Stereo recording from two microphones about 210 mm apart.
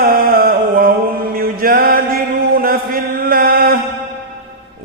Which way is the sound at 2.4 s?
45° right (ahead or behind).